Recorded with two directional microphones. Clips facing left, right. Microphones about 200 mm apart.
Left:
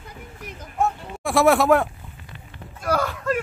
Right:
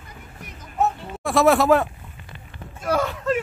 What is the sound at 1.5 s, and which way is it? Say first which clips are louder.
Speech: even; 5° left (ahead or behind).